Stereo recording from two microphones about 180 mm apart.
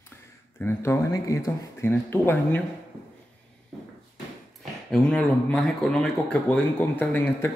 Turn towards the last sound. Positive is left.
turn(degrees=10)  # may be behind; listen again after turning